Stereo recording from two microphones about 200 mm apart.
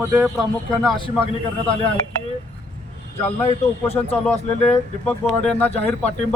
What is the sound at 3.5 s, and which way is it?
Speech, 30° left (ahead or behind).